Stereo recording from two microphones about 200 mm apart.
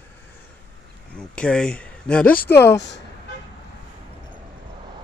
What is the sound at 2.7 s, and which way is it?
Speech, 60° left (ahead or behind).